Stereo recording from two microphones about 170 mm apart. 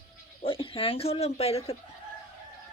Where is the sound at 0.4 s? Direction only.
30° left (ahead or behind).